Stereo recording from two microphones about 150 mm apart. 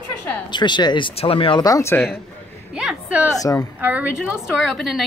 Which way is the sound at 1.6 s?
20° left (ahead or behind).